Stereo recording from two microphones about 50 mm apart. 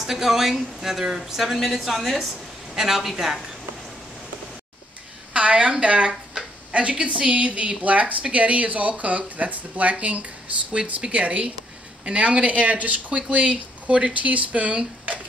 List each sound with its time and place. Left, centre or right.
0.0 s a woman's voice: centre
5.3 s speech: right